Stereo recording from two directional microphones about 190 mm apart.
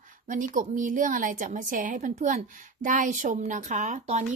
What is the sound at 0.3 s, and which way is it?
A woman's voice, 45° right (ahead or behind).